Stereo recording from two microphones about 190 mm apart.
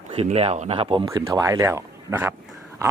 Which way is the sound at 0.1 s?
30° right (ahead or behind).